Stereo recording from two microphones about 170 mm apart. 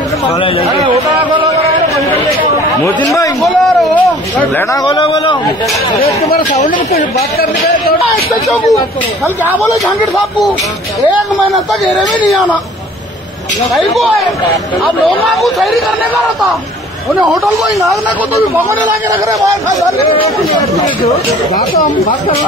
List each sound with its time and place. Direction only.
0.7 s a sound: 30° right (ahead or behind)
3.4 s speech: centre (ahead or behind)
4.8 s a man's voice: 25° left (ahead or behind)
6.5 s speech: 40° left (ahead or behind)
7.3 s speech: 60° left (ahead or behind)
8.5 s speech: centre (ahead or behind)
15.0 s speech: centre (ahead or behind)